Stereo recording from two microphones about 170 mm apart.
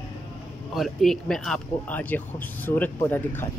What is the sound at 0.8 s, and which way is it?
Speech, centre (ahead or behind).